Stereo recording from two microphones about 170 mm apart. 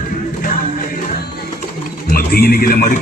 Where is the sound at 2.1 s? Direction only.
65° left (ahead or behind).